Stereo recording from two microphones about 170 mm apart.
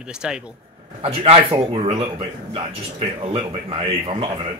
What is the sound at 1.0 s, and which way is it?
A man's voice, 35° right (ahead or behind).